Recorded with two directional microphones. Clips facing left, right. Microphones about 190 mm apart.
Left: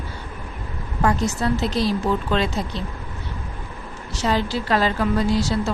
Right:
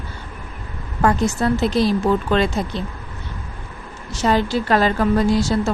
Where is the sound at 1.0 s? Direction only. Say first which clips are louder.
Right 3 dB; 50° right (ahead or behind).